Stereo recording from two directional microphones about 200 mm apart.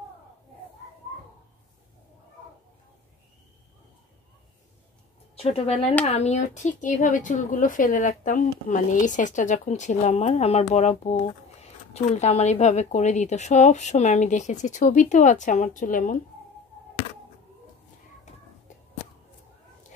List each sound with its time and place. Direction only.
5.3 s a woman's voice: 30° left (ahead or behind)